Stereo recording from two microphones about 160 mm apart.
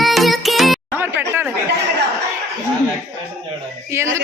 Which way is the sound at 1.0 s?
15° right (ahead or behind).